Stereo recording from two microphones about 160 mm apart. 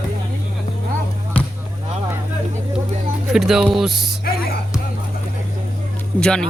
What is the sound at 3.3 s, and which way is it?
Speech, 5° right (ahead or behind).